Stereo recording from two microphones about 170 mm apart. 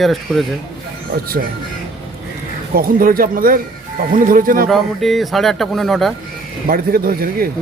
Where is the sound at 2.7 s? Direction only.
55° right (ahead or behind).